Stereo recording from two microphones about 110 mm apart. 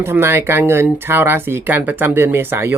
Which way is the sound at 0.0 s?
20° right (ahead or behind).